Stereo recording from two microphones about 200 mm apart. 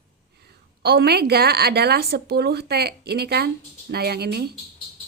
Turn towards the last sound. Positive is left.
turn(degrees=-55)  # may be behind; listen again after turning